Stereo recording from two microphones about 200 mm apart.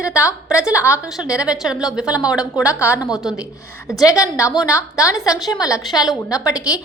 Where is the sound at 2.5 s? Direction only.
15° left (ahead or behind).